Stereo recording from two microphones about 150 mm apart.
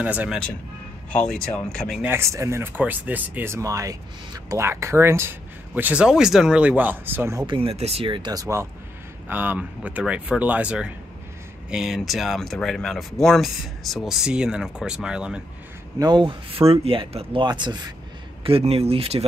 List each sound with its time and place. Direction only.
0.0 s speech: 10° right (ahead or behind)
1.1 s speech: 10° left (ahead or behind)
2.0 s speech: 20° right (ahead or behind)
7.4 s speech: 35° right (ahead or behind); by 15.4 s 5° right (ahead or behind)
16.0 s speech: 30° right (ahead or behind)
18.4 s speech: 40° right (ahead or behind)